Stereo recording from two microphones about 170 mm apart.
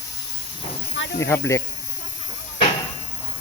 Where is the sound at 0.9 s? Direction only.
90° left.